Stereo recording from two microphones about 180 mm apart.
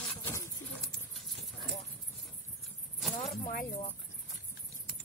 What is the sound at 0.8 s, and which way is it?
Horse, centre (ahead or behind).